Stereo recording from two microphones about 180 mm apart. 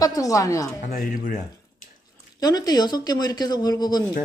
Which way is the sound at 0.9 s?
55° left (ahead or behind).